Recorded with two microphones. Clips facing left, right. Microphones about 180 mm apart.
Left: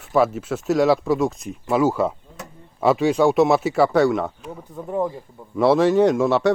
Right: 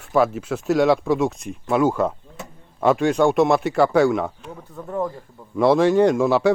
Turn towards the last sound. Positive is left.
turn(degrees=0)  # may be behind; listen again after turning